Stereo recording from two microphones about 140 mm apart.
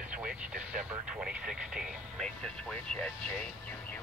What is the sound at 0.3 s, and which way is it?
Vehicle, 90° right.